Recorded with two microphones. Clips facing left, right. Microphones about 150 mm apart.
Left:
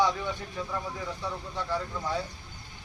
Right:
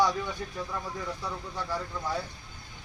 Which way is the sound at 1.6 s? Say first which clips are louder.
Left 2 dB; 5° right (ahead or behind).